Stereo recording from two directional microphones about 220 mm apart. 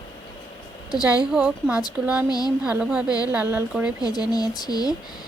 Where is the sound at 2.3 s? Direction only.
15° left (ahead or behind).